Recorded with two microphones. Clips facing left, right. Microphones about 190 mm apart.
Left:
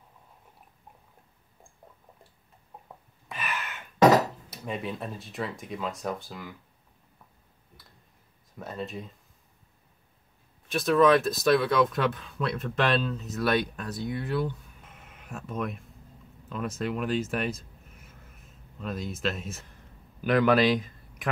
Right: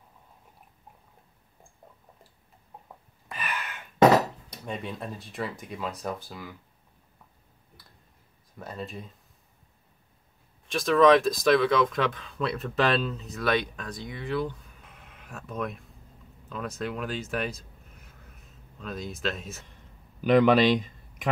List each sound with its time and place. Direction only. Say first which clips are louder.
3.3 s gasp: even; centre (ahead or behind)
4.5 s speech: left 2 dB; 5° left (ahead or behind)
7.8 s clicking: even; centre (ahead or behind)
8.5 s speech: left 2 dB; centre (ahead or behind)
10.7 s speech: right 1 dB; 5° left (ahead or behind)